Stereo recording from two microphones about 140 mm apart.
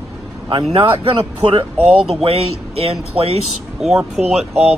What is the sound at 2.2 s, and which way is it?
Speech, 45° right (ahead or behind).